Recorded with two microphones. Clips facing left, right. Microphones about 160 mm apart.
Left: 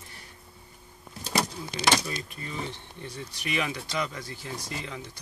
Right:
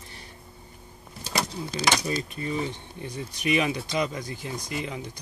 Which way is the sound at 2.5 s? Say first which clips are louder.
Right 2 dB; 15° right (ahead or behind).